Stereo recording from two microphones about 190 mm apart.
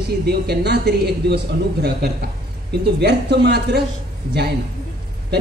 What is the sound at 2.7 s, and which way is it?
Speech, 60° right (ahead or behind).